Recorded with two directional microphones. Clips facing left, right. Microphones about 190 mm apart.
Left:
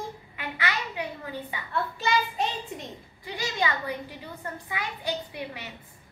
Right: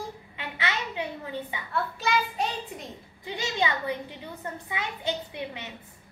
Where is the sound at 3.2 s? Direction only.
20° right (ahead or behind).